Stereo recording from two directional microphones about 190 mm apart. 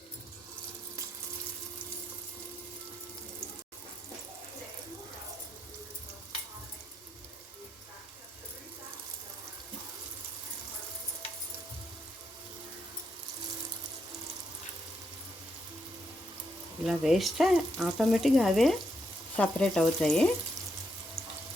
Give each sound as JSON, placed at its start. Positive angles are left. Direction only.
{"t": 16.8, "sound": "frying", "side_deg": 0}
{"t": 21.2, "sound": "sink", "side_deg": -15}